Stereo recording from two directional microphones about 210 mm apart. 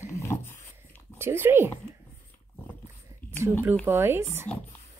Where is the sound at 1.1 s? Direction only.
10° right (ahead or behind).